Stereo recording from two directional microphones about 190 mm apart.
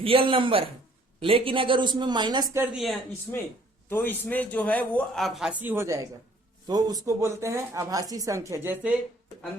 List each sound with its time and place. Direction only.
0.0 s a woman's voice: 30° right (ahead or behind)
2.7 s speech: centre (ahead or behind)
3.8 s speech: 10° left (ahead or behind); by 9.0 s 10° right (ahead or behind)